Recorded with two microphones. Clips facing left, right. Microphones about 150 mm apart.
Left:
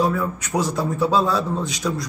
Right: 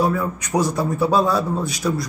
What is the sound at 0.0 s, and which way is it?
Speech, 10° right (ahead or behind).